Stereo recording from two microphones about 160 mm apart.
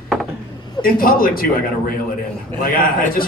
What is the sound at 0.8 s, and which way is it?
Speech, 60° left (ahead or behind).